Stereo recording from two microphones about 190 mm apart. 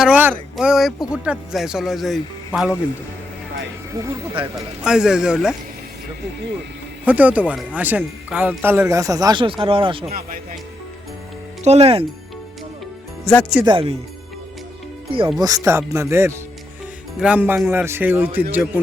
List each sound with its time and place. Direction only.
0.0 s speech: 10° right (ahead or behind)
4.4 s speech: 30° right (ahead or behind)
4.8 s speech: 5° right (ahead or behind)
7.0 s speech: 10° right (ahead or behind); by 10.1 s 30° right (ahead or behind)
10.1 s speech: 50° right (ahead or behind)
11.6 s speech: 35° right (ahead or behind)
13.2 s speech: 5° left (ahead or behind)
13.7 s speech: 30° right (ahead or behind)
15.4 s speech: 20° right (ahead or behind)